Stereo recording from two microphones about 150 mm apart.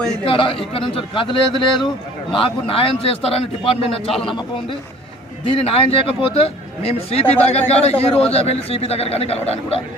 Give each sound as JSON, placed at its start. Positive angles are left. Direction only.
{"t": 0.3, "sound": "a man's voice", "side_deg": 35}
{"t": 4.1, "sound": "speech", "side_deg": 0}
{"t": 5.5, "sound": "a man's voice", "side_deg": 40}